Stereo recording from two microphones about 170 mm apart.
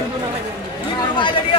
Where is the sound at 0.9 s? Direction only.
25° left (ahead or behind).